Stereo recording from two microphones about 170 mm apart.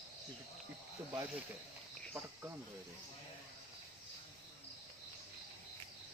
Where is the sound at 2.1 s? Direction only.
10° right (ahead or behind).